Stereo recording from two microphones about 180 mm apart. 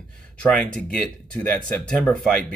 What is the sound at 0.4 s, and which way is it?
Speech, 5° left (ahead or behind).